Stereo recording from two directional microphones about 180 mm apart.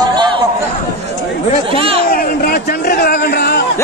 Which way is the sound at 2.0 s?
55° left (ahead or behind).